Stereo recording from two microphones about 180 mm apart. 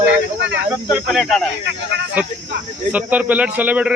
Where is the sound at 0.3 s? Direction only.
80° right.